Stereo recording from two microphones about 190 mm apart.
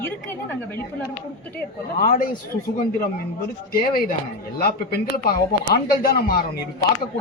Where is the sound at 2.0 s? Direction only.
50° left (ahead or behind).